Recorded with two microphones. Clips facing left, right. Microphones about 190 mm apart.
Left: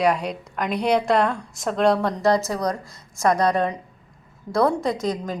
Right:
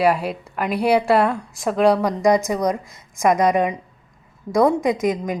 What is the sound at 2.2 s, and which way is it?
A woman's voice, 15° right (ahead or behind).